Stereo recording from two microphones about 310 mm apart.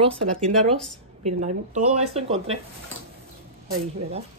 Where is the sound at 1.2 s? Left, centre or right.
Right.